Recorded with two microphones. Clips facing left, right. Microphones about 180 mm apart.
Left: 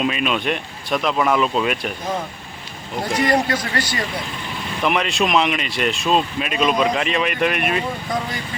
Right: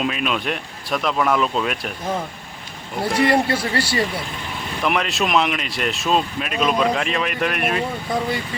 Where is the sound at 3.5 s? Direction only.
30° right (ahead or behind).